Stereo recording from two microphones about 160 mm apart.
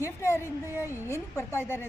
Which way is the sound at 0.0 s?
15° left (ahead or behind).